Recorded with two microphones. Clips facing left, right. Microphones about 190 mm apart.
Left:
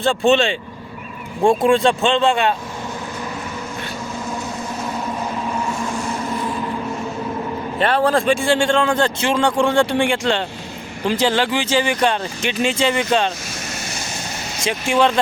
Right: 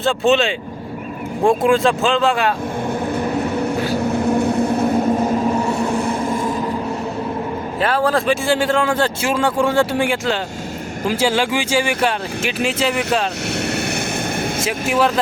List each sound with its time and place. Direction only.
0.0 s speech: centre (ahead or behind)
3.2 s vehicle: 65° right (ahead or behind); by 5.7 s 35° right (ahead or behind)
5.7 s vehicle: 60° right (ahead or behind)
7.8 s speech: centre (ahead or behind)
14.6 s speech: 5° right (ahead or behind)